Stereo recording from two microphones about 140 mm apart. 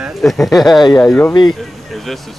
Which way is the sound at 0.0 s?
Centre (ahead or behind).